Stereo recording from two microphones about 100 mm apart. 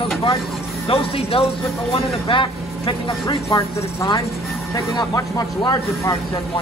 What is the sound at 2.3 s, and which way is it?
Speech, 55° left (ahead or behind).